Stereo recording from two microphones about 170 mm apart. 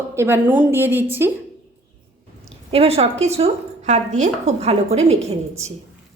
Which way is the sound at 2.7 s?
35° right (ahead or behind).